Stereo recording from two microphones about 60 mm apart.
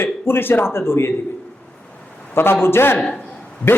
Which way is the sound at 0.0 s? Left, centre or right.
Left.